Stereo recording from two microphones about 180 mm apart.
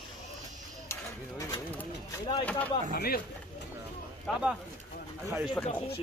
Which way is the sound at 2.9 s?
55° left (ahead or behind).